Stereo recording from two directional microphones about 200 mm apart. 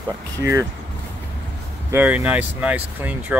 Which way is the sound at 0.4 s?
15° right (ahead or behind).